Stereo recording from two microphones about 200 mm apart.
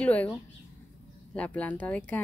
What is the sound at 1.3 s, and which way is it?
Speech, 5° left (ahead or behind).